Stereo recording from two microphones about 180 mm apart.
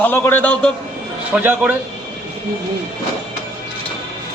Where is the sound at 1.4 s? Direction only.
10° right (ahead or behind).